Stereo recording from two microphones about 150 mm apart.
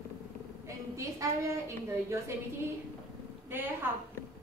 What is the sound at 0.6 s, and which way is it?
A woman's voice, 20° right (ahead or behind).